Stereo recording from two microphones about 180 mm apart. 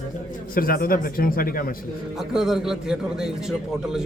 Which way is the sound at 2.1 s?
Centre (ahead or behind).